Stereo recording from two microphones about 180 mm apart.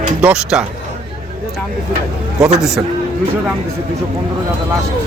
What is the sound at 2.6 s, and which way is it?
Speech, centre (ahead or behind).